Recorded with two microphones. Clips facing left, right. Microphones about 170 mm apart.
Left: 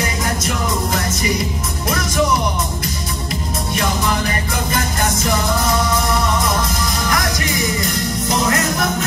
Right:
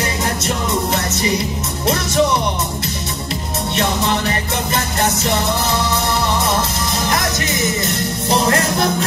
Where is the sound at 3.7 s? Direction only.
25° right (ahead or behind).